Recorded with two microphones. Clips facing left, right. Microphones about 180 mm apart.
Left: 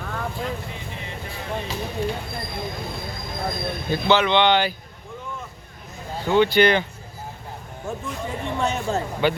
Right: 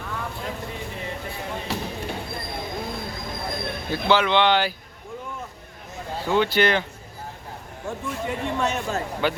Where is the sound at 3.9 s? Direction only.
5° right (ahead or behind).